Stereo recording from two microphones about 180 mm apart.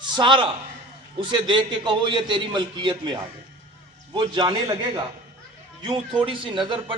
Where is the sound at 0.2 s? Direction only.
30° right (ahead or behind).